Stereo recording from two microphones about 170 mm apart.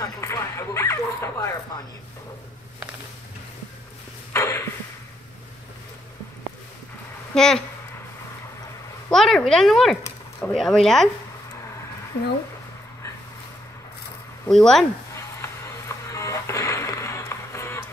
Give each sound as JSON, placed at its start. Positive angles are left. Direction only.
{"t": 0.0, "sound": "speech", "side_deg": 15}
{"t": 4.3, "sound": "a sound", "side_deg": 15}
{"t": 7.3, "sound": "speech", "side_deg": 5}
{"t": 9.1, "sound": "speech", "side_deg": 0}
{"t": 14.5, "sound": "speech", "side_deg": 5}
{"t": 16.1, "sound": "music", "side_deg": 20}